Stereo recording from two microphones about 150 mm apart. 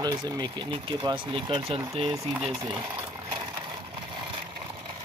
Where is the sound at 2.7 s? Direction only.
35° right (ahead or behind).